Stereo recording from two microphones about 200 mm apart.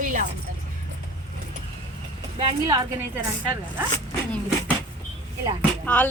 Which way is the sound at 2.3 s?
20° right (ahead or behind).